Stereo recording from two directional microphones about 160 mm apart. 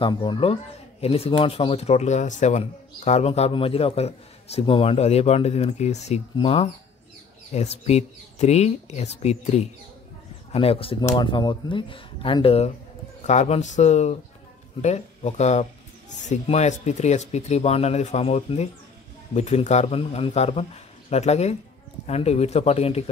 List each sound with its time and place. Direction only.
0.0 s speech: 30° left (ahead or behind)